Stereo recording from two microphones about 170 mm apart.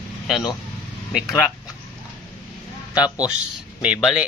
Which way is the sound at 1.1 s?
Centre (ahead or behind).